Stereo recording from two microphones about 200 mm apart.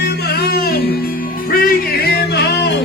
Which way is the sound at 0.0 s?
50° left (ahead or behind).